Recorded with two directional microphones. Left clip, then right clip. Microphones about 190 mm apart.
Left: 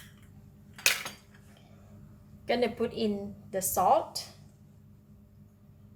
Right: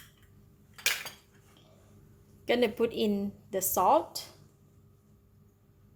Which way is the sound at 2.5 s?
45° right (ahead or behind).